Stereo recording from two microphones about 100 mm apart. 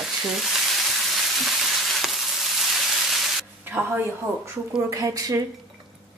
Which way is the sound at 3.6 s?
20° right (ahead or behind).